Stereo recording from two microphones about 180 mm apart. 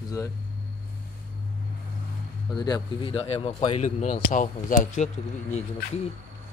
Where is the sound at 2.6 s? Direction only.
25° left (ahead or behind); by 5.6 s 40° left (ahead or behind).